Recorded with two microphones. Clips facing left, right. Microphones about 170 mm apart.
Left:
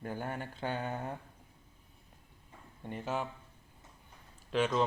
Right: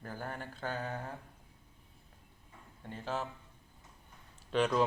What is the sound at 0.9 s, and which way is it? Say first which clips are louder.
Speech: left 3 dB; 20° left (ahead or behind).